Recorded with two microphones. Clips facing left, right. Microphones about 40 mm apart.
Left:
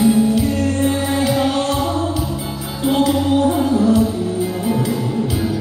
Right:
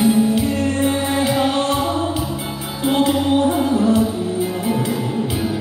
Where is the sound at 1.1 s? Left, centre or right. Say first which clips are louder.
Left 1 dB; right.